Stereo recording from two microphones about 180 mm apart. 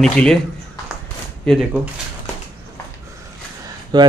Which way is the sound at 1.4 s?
Centre (ahead or behind).